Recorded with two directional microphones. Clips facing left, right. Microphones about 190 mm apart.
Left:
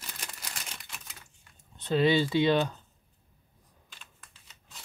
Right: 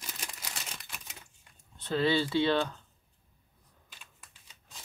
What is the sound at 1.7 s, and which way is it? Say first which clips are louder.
Speech: left 3 dB; 20° left (ahead or behind).